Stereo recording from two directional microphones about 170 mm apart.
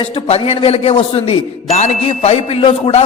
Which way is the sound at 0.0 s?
35° left (ahead or behind).